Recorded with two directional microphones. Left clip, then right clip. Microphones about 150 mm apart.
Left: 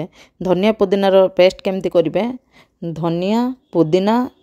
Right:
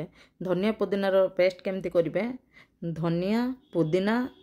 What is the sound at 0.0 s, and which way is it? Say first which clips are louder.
Speech: left 12 dB; 40° left (ahead or behind).